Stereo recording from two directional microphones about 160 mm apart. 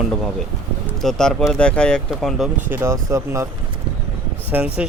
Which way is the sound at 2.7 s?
15° right (ahead or behind).